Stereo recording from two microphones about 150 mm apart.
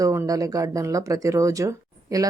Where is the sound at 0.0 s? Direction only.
20° right (ahead or behind).